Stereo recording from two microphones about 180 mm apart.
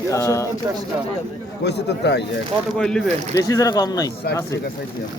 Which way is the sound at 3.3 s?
20° left (ahead or behind).